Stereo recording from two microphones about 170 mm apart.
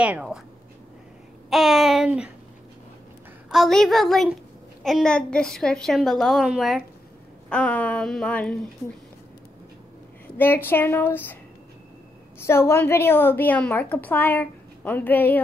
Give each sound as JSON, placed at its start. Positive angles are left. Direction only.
{"t": 0.0, "sound": "a woman's voice", "side_deg": -5}
{"t": 1.5, "sound": "a woman's voice", "side_deg": 0}
{"t": 3.4, "sound": "a woman's voice", "side_deg": 0}
{"t": 10.3, "sound": "a woman's voice", "side_deg": 10}
{"t": 12.4, "sound": "a woman's voice", "side_deg": 15}